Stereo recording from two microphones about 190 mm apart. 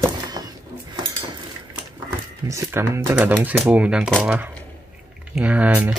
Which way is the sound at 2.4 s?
15° right (ahead or behind).